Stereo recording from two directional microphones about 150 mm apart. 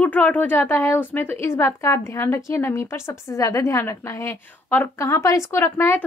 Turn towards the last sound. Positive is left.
turn(degrees=15)  # may be behind; listen again after turning